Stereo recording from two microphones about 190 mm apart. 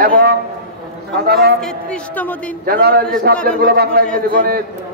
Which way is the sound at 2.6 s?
55° right (ahead or behind).